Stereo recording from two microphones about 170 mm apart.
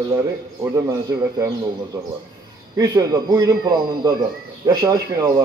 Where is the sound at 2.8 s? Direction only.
20° right (ahead or behind).